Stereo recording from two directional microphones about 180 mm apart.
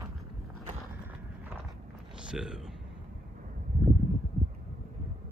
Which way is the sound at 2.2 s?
5° right (ahead or behind).